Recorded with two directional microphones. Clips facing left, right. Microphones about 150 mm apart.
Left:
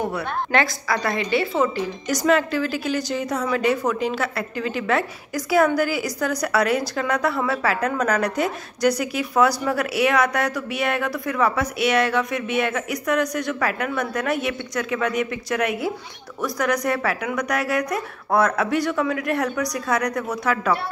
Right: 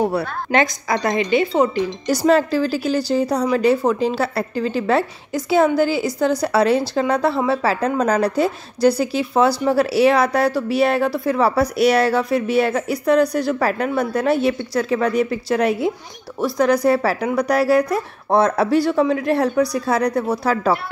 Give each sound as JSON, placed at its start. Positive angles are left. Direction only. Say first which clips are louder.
{"t": 0.5, "sound": "a woman's voice", "louder": "right 4 dB", "side_deg": -20}
{"t": 2.0, "sound": "a woman's voice", "louder": "right 4 dB", "side_deg": -35}